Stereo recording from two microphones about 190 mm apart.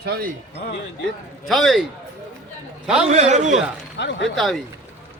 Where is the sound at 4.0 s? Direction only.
70° left (ahead or behind).